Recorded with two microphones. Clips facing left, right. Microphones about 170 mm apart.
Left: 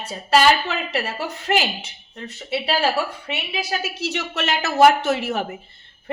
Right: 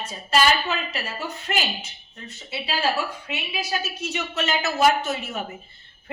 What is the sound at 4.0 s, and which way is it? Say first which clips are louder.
Speech: left 2 dB; 75° left (ahead or behind).